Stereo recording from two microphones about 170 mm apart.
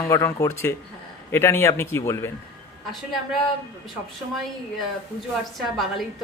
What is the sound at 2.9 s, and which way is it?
Speech, centre (ahead or behind).